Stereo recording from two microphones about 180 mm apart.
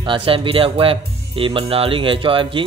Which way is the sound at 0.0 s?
30° right (ahead or behind).